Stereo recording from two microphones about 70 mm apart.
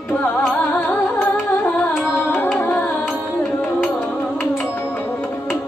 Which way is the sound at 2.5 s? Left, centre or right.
Left.